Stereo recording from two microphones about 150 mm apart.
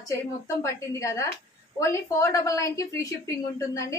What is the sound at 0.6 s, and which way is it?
A woman's voice, 20° left (ahead or behind).